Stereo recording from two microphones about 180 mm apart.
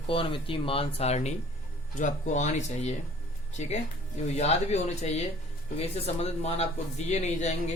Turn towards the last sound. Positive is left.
turn(degrees=40)  # may be behind; listen again after turning